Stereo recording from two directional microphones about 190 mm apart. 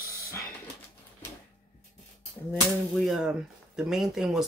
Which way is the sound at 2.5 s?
Centre (ahead or behind).